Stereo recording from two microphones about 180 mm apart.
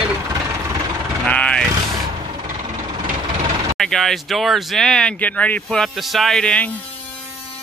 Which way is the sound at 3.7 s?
Centre (ahead or behind).